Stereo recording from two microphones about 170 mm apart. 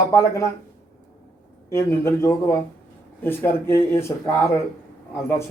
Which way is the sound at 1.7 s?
15° left (ahead or behind).